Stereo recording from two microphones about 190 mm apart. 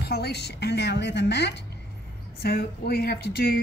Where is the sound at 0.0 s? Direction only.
60° left (ahead or behind).